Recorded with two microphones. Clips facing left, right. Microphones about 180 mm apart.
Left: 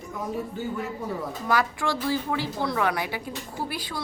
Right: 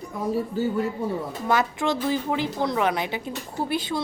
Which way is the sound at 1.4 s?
20° right (ahead or behind).